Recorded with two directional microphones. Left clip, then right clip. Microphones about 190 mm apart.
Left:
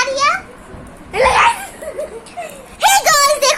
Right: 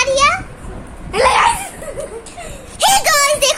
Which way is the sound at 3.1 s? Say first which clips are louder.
Left 1 dB; 10° right (ahead or behind).